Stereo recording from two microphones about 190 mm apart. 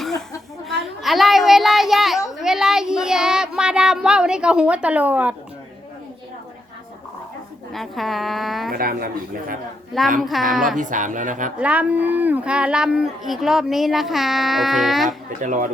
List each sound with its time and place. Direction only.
1.0 s children playing: centre (ahead or behind)
2.4 s child singing: 5° right (ahead or behind)
7.7 s speech: centre (ahead or behind)
8.7 s speech: 50° right (ahead or behind)
10.2 s speech: centre (ahead or behind)
10.8 s speech: 45° right (ahead or behind)
11.6 s speech: 5° right (ahead or behind)
15.4 s speech: 40° right (ahead or behind)